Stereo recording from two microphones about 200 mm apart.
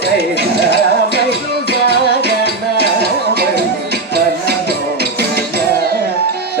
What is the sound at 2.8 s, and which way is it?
Music, 55° right (ahead or behind).